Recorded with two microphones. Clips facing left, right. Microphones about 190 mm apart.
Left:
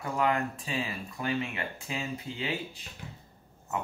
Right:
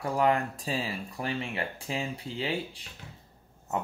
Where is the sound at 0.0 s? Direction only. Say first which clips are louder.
Right 3 dB; 35° right (ahead or behind).